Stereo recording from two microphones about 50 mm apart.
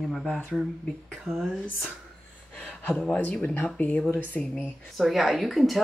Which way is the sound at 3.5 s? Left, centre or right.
Left.